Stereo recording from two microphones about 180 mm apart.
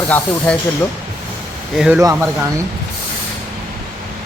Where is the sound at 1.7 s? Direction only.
5° right (ahead or behind).